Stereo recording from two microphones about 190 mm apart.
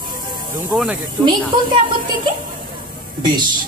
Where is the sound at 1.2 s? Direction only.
25° right (ahead or behind).